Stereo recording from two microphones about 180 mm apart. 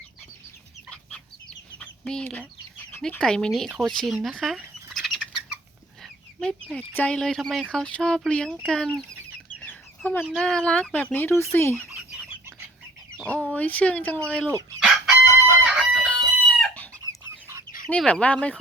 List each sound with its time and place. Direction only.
0.9 s chicken: 5° left (ahead or behind)
3.0 s speech: 5° left (ahead or behind)
6.0 s chicken: centre (ahead or behind)
6.9 s speech: 5° left (ahead or behind)
9.6 s chicken: 10° left (ahead or behind)
10.2 s speech: centre (ahead or behind)
13.1 s speech: 10° left (ahead or behind)
14.4 s chicken: 15° right (ahead or behind)
14.8 s chicken: centre (ahead or behind)
17.8 s speech: 5° left (ahead or behind)